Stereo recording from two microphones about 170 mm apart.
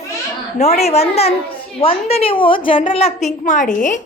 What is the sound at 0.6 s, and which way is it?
A woman's voice, 40° left (ahead or behind).